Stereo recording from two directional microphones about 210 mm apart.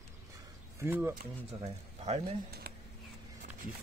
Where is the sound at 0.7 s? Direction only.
10° right (ahead or behind).